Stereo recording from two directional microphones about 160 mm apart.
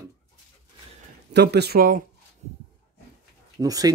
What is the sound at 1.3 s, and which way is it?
Speech, 90° right.